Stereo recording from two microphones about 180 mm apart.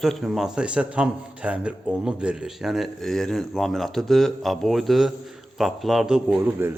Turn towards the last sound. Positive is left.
turn(degrees=-10)  # may be behind; listen again after turning